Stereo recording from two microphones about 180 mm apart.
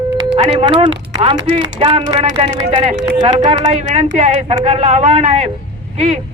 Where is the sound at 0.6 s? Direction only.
25° right (ahead or behind).